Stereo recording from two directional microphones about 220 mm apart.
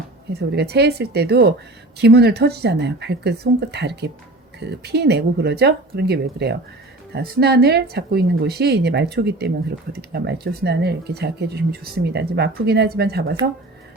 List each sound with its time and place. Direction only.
0.3 s speech: 45° right (ahead or behind)